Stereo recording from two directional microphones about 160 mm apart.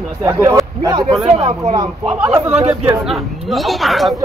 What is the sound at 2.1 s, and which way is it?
Speech, 5° right (ahead or behind).